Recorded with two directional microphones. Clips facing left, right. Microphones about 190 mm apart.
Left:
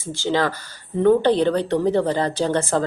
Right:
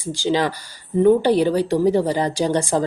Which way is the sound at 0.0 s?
15° right (ahead or behind).